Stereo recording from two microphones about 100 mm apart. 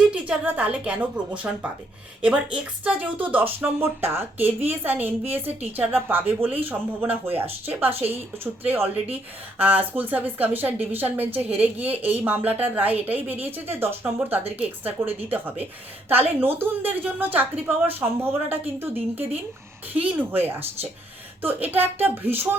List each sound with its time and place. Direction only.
0.1 s a woman's voice: 15° right (ahead or behind)
2.2 s a woman's voice: 10° right (ahead or behind)